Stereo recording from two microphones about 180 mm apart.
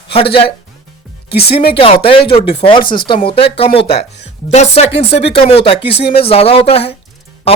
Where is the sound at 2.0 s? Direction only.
30° left (ahead or behind).